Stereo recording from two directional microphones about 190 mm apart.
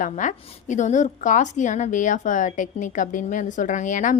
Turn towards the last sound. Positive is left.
turn(degrees=40)  # may be behind; listen again after turning